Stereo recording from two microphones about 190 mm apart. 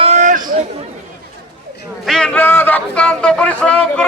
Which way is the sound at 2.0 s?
5° left (ahead or behind).